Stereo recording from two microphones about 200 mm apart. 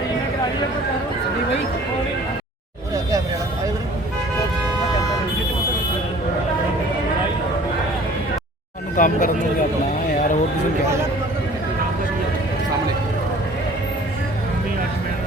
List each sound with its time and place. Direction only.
9.0 s speech: 40° left (ahead or behind)